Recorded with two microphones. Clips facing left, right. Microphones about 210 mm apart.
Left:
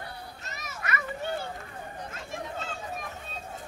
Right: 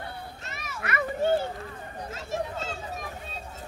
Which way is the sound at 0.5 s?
40° left (ahead or behind).